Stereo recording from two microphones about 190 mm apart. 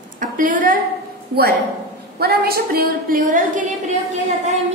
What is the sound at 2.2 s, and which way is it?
A woman's voice, 55° right (ahead or behind).